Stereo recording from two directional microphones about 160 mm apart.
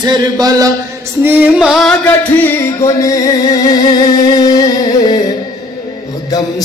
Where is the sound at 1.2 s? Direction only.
5° right (ahead or behind).